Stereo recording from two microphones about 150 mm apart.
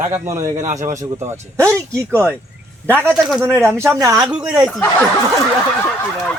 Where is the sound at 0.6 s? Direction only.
55° right (ahead or behind).